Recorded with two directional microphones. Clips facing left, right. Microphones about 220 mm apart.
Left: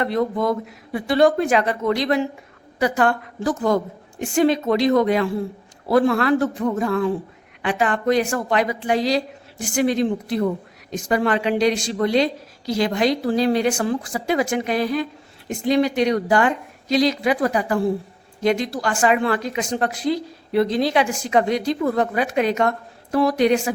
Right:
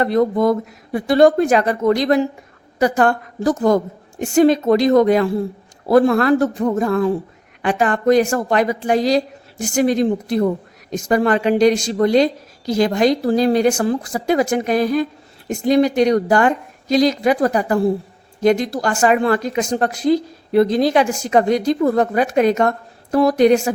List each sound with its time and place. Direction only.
0.0 s a woman's voice: 40° right (ahead or behind)